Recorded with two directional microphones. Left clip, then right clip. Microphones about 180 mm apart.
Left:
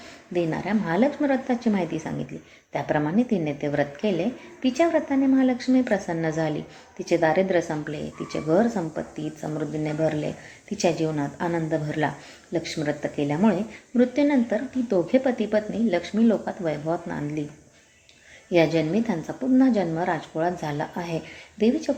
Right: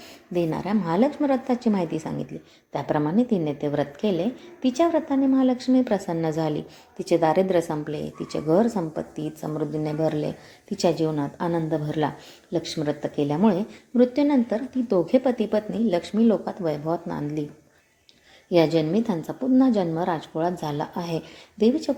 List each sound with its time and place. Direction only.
0.3 s a woman's voice: 25° right (ahead or behind)
18.5 s a woman's voice: 25° right (ahead or behind)